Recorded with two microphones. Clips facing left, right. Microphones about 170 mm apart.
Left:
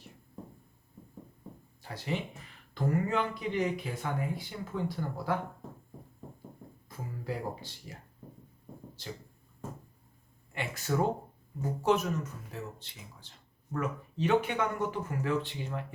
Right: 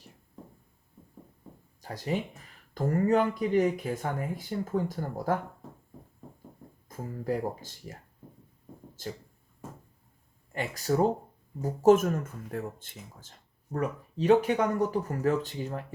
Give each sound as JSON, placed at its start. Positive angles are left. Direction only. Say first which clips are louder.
{"t": 1.8, "sound": "speech", "louder": "right 4 dB", "side_deg": -45}
{"t": 6.8, "sound": "speech", "louder": "right 6 dB", "side_deg": -45}
{"t": 9.0, "sound": "a sound", "louder": "right 5 dB", "side_deg": -45}
{"t": 10.5, "sound": "speech", "louder": "right 4 dB", "side_deg": -40}